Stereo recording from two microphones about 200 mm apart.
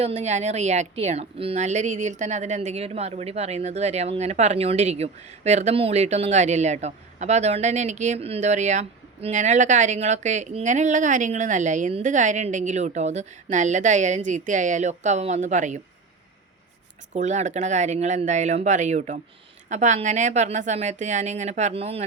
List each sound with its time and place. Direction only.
0.0 s a woman's voice: 30° right (ahead or behind)
17.2 s a woman's voice: 35° right (ahead or behind)